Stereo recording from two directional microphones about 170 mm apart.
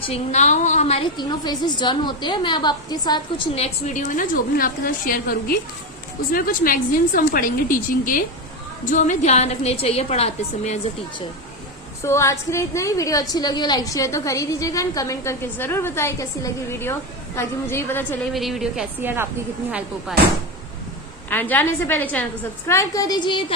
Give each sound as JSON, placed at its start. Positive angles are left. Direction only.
{"t": 0.0, "sound": "a woman's voice", "side_deg": 40}
{"t": 1.1, "sound": "a woman's voice", "side_deg": 25}
{"t": 3.5, "sound": "a woman's voice", "side_deg": 40}
{"t": 12.0, "sound": "a woman's voice", "side_deg": 15}
{"t": 18.3, "sound": "a woman's voice", "side_deg": 0}
{"t": 21.2, "sound": "a woman's voice", "side_deg": 10}